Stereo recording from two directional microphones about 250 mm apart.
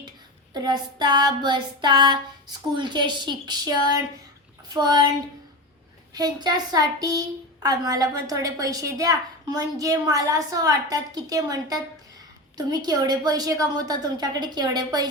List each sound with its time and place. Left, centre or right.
0.5 s a woman's voice: centre
6.1 s a woman's voice: centre